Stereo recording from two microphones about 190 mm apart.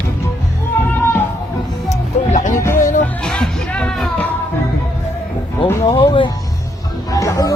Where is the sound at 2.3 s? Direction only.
40° left (ahead or behind).